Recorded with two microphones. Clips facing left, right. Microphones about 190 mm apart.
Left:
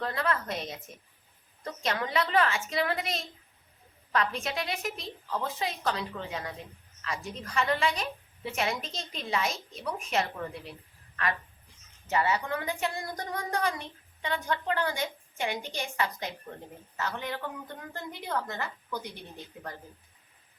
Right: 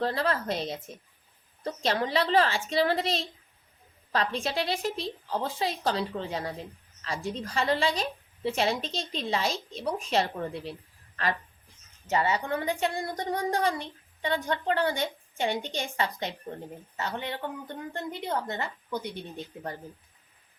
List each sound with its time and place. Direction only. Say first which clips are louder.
0.0 s a woman's voice: right 3 dB; 30° right (ahead or behind)
12.1 s a woman's voice: right 1 dB; 25° right (ahead or behind)